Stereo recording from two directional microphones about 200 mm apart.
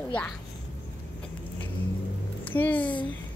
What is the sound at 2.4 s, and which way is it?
Speech, 10° left (ahead or behind).